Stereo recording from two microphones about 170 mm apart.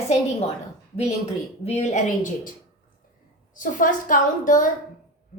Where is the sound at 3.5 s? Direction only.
50° left (ahead or behind).